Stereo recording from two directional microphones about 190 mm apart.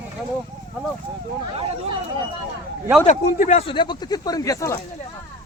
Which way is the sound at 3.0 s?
40° left (ahead or behind).